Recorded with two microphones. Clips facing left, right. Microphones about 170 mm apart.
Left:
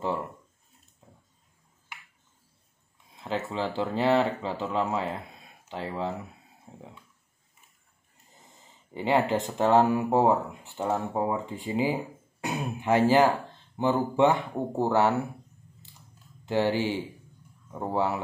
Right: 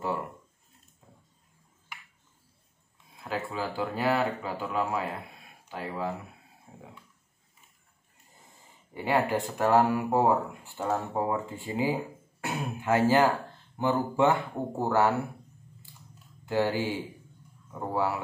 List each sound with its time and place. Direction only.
3.2 s speech: 25° left (ahead or behind)
6.7 s dog: 25° left (ahead or behind)
8.9 s speech: 20° left (ahead or behind)
16.4 s speech: 20° left (ahead or behind)
17.7 s speech: 20° left (ahead or behind)